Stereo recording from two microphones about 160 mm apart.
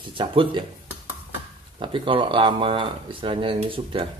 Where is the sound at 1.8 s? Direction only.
30° right (ahead or behind).